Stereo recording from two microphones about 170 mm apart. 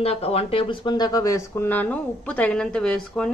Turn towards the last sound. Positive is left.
turn(degrees=5)  # may be behind; listen again after turning